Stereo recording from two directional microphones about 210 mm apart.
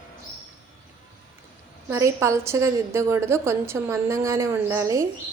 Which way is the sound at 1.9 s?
15° right (ahead or behind).